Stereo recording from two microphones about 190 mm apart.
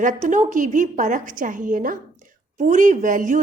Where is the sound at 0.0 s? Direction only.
40° right (ahead or behind).